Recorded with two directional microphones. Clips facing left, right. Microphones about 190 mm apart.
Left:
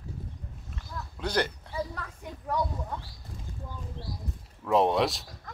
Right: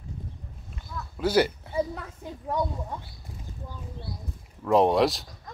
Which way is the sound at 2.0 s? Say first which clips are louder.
Right 2 dB; 20° right (ahead or behind).